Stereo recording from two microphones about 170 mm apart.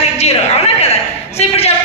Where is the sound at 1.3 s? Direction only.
35° left (ahead or behind).